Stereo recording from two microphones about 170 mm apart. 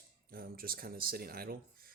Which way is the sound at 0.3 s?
60° right (ahead or behind).